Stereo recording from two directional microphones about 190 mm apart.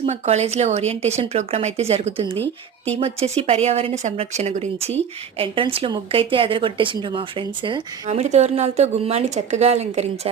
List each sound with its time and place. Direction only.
0.0 s speech: 35° right (ahead or behind)
2.4 s speech: 10° left (ahead or behind)
3.0 s a woman's voice: 35° right (ahead or behind)